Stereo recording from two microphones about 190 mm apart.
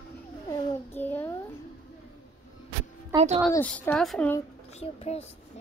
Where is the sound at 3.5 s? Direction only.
10° left (ahead or behind).